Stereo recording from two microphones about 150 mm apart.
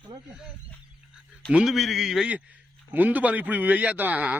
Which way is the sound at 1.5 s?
Centre (ahead or behind).